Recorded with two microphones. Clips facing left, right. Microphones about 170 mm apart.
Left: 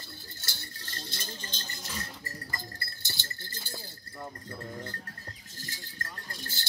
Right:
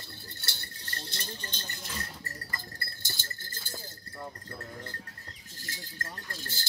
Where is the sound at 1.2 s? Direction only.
60° right (ahead or behind).